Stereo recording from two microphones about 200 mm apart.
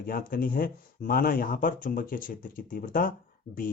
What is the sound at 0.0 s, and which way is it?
Speech, 45° left (ahead or behind).